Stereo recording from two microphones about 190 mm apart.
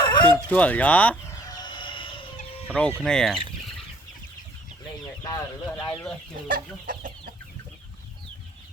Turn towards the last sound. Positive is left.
turn(degrees=-50)  # may be behind; listen again after turning